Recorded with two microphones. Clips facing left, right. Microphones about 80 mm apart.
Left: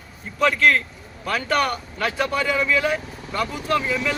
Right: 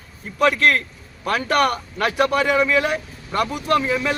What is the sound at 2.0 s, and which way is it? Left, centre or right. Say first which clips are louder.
Speech: right 5 dB; centre.